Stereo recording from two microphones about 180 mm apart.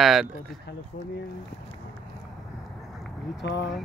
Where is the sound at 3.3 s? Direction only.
85° left.